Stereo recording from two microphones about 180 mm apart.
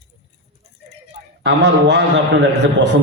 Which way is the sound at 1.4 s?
75° right (ahead or behind).